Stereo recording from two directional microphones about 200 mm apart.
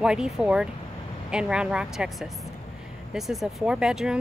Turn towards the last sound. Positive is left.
turn(degrees=-5)  # may be behind; listen again after turning